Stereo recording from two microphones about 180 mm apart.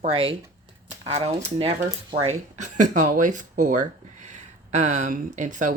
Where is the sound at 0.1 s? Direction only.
30° right (ahead or behind).